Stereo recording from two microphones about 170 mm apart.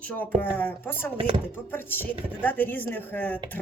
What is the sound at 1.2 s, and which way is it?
Speech, 30° right (ahead or behind).